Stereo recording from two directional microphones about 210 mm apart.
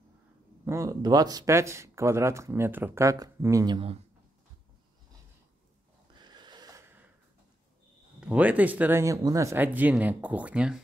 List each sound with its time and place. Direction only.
0.7 s speech: 15° right (ahead or behind)
6.1 s a sound: 20° right (ahead or behind)
8.2 s speech: 5° right (ahead or behind)